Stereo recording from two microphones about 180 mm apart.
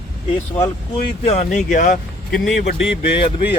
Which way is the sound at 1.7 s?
50° left (ahead or behind).